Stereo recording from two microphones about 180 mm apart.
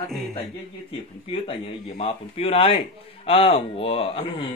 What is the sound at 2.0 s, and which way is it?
A man's voice, 30° left (ahead or behind).